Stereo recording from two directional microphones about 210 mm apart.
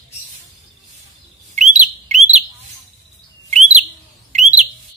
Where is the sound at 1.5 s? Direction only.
35° right (ahead or behind).